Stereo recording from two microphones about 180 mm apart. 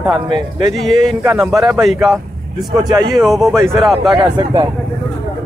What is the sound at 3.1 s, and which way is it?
Speech, centre (ahead or behind).